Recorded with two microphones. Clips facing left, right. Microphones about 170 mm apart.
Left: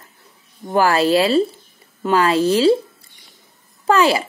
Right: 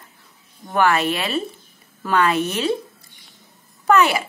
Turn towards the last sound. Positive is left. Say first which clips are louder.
# left 1 dB
turn(degrees=30)  # may be behind; listen again after turning